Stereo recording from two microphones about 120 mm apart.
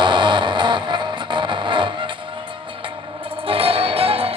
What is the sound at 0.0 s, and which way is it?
Music, 40° right (ahead or behind).